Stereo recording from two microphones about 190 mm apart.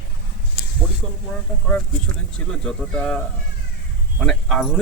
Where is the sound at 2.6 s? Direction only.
5° left (ahead or behind).